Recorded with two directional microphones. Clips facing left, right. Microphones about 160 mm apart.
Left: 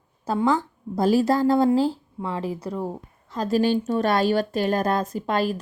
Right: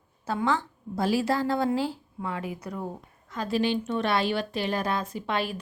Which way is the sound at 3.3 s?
40° left (ahead or behind).